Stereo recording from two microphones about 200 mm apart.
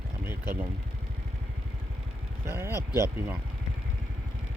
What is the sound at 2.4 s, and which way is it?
Speech, 10° right (ahead or behind).